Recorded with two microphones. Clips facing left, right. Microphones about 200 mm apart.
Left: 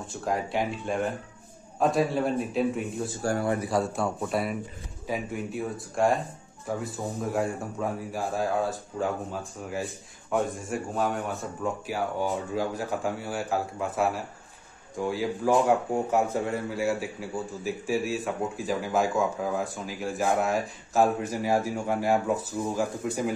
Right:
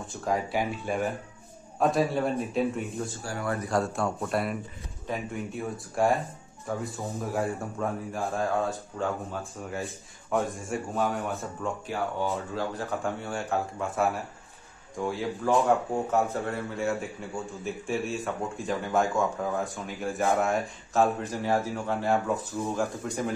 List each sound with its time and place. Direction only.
0.0 s a man's voice: centre (ahead or behind)
3.2 s speech: 40° left (ahead or behind)
3.6 s a man's voice: centre (ahead or behind)
15.9 s a man's voice: 15° left (ahead or behind)
16.7 s a man's voice: centre (ahead or behind)
21.2 s a man's voice: 10° left (ahead or behind)